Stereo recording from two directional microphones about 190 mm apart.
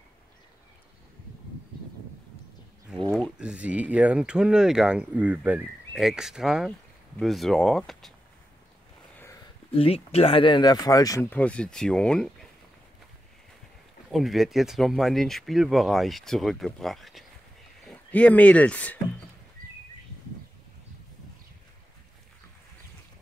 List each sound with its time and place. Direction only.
3.1 s speech: 5° right (ahead or behind)
9.1 s a sound: 10° left (ahead or behind)
9.7 s speech: 30° left (ahead or behind); by 12.3 s 5° left (ahead or behind)
14.1 s speech: centre (ahead or behind)